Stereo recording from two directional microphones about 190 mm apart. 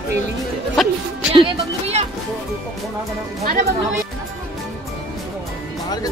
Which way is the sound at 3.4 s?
50° right (ahead or behind).